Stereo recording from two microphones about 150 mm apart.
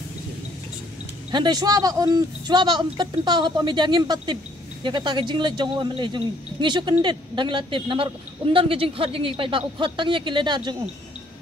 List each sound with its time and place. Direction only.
1.3 s a man's voice: 30° right (ahead or behind)